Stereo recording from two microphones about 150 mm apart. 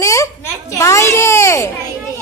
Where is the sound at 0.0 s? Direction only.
20° left (ahead or behind).